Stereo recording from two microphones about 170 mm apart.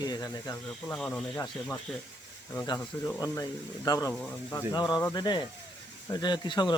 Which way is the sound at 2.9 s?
15° left (ahead or behind).